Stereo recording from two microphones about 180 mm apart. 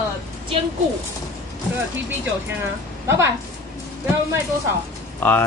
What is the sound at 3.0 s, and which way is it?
Speech, 15° right (ahead or behind).